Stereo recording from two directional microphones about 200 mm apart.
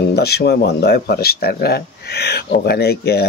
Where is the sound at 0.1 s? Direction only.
55° left (ahead or behind).